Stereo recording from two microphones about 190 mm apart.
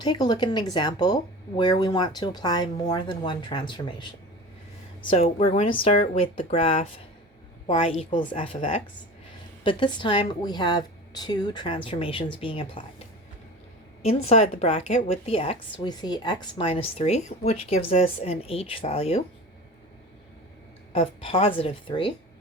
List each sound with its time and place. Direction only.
0.0 s a woman's voice: 20° left (ahead or behind)
14.0 s a woman's voice: 35° left (ahead or behind)
16.6 s a woman's voice: 35° left (ahead or behind)
20.9 s speech: 30° left (ahead or behind)